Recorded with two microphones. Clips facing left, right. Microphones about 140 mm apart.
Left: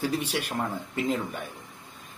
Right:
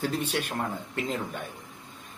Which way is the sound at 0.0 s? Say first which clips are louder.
Left 1 dB; 5° left (ahead or behind).